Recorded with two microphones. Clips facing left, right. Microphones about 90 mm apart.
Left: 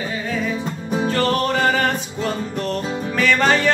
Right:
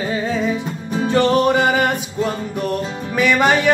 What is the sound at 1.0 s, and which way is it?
Music, 20° right (ahead or behind).